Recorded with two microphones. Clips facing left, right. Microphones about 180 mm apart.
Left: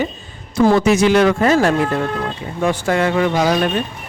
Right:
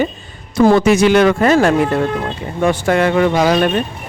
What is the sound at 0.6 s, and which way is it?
Speech, 65° right (ahead or behind).